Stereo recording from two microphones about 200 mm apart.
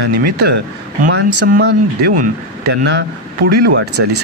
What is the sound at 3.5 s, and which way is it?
Speech, 55° right (ahead or behind).